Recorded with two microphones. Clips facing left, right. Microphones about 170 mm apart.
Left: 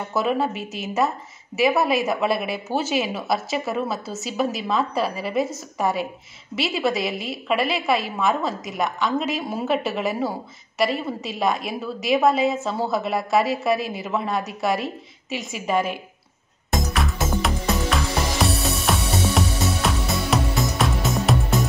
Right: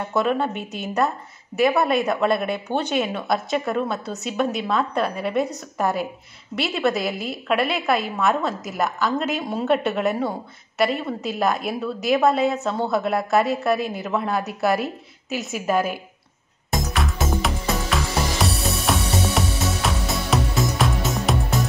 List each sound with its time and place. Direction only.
0.1 s a woman's voice: centre (ahead or behind)
16.9 s music: centre (ahead or behind)